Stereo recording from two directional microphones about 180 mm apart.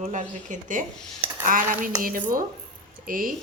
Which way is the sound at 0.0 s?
40° right (ahead or behind).